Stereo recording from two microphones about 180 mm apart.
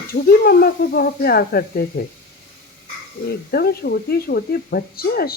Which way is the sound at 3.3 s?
60° left (ahead or behind).